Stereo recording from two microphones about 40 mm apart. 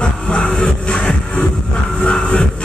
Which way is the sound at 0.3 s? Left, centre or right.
Left.